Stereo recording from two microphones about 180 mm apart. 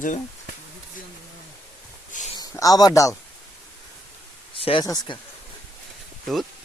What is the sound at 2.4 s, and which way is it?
Speech, 20° left (ahead or behind).